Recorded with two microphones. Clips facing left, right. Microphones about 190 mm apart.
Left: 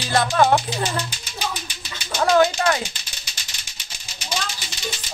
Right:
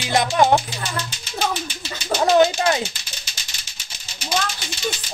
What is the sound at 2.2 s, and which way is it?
Speech, 20° right (ahead or behind).